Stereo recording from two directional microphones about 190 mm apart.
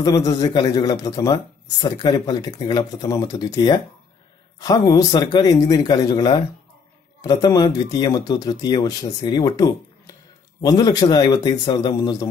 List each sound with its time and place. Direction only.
0.0 s speech: 20° left (ahead or behind)